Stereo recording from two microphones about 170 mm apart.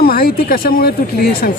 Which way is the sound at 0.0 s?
60° left (ahead or behind).